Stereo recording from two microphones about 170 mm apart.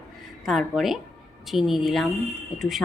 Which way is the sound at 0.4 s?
Centre (ahead or behind).